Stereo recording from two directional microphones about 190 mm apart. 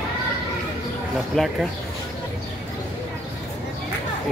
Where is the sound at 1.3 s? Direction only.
5° left (ahead or behind).